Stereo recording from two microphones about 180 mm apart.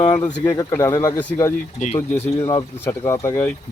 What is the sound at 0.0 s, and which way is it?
Speech, 25° left (ahead or behind).